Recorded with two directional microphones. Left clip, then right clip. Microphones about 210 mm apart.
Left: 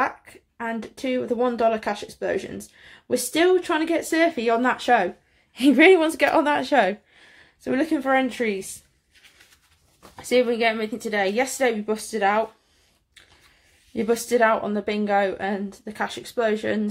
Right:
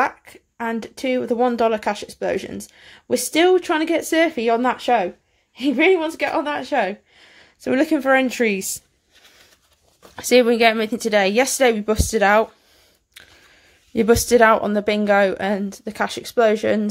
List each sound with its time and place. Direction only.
0.0 s speech: 35° right (ahead or behind); by 5.1 s 15° right (ahead or behind)
5.5 s a woman's voice: 15° left (ahead or behind)
7.2 s a sound: 20° right (ahead or behind)
7.6 s speech: 35° right (ahead or behind)
10.1 s speech: 45° right (ahead or behind)
13.9 s speech: 40° right (ahead or behind)